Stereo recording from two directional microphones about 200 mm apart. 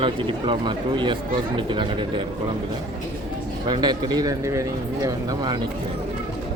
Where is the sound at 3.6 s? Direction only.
20° right (ahead or behind).